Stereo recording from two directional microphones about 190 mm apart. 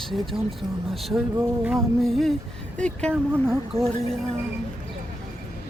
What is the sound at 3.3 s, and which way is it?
Speech, 10° right (ahead or behind).